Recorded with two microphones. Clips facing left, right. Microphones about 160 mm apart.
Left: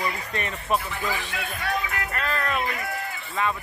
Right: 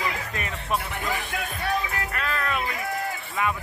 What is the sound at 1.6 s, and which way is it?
Music, 30° right (ahead or behind).